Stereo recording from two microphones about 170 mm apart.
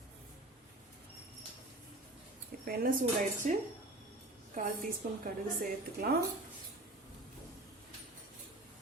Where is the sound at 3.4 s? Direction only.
45° right (ahead or behind).